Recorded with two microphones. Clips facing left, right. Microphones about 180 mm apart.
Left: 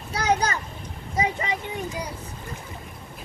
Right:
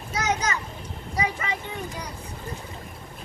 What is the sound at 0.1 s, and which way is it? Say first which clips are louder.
Children playing: left 3 dB; 30° left (ahead or behind).